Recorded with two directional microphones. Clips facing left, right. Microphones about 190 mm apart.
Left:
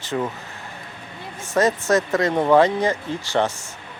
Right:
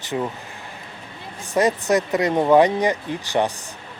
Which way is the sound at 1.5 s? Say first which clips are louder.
Even; 15° right (ahead or behind).